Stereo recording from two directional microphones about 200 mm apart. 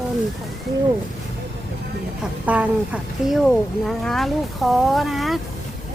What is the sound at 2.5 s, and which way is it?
Speech, 5° right (ahead or behind).